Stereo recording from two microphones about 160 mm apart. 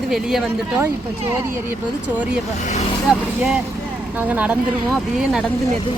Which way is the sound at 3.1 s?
5° right (ahead or behind).